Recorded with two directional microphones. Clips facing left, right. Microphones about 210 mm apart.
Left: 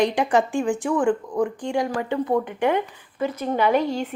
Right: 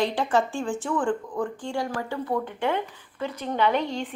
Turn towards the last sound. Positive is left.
turn(degrees=10)  # may be behind; listen again after turning